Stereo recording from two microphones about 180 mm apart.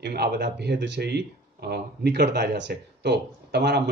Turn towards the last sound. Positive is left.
turn(degrees=-70)  # may be behind; listen again after turning